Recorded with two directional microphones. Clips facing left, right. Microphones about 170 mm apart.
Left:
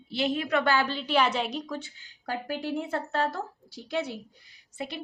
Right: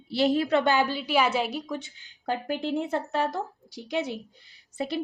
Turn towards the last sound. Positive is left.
turn(degrees=-35)  # may be behind; listen again after turning